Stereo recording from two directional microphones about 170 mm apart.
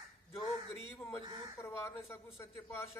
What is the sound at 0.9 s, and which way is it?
A man's voice, 15° left (ahead or behind).